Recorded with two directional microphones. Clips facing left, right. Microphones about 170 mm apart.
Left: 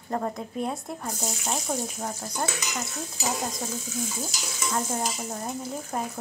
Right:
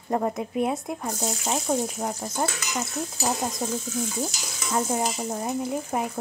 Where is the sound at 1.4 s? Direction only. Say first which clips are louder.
Right 5 dB; 20° right (ahead or behind).